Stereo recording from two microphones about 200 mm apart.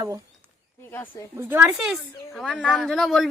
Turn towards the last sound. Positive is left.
turn(degrees=0)  # may be behind; listen again after turning